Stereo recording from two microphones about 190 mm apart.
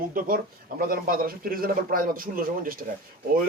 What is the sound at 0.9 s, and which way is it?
Speech, 50° right (ahead or behind).